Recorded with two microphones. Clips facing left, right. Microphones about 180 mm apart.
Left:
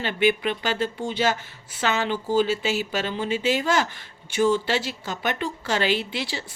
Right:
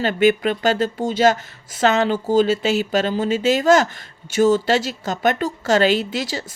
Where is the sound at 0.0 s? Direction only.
45° right (ahead or behind).